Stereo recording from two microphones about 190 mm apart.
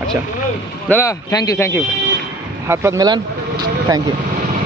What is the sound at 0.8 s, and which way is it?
Speech, 15° left (ahead or behind).